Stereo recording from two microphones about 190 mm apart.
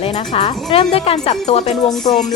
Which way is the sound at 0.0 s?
30° left (ahead or behind).